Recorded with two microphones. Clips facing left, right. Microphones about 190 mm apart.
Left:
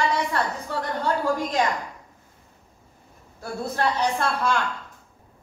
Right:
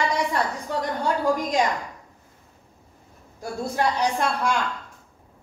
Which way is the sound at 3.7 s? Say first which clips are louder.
Right 1 dB; 15° right (ahead or behind).